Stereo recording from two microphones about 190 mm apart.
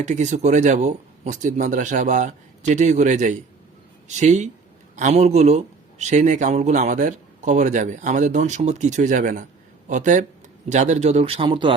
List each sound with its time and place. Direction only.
0.0 s speech: 40° right (ahead or behind)